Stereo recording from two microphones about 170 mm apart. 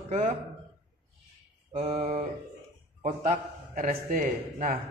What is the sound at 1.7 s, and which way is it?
A man's voice, 40° right (ahead or behind).